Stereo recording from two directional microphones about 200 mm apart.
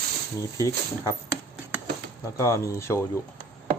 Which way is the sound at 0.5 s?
15° left (ahead or behind).